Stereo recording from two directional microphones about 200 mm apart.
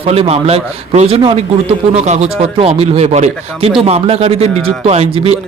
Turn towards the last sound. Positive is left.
turn(degrees=-30)  # may be behind; listen again after turning